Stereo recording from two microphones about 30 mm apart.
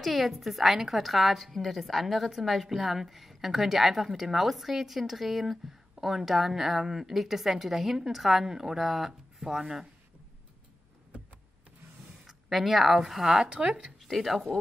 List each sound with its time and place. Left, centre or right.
0.0 s a woman's voice: centre
12.3 s speech: centre
14.0 s speech: centre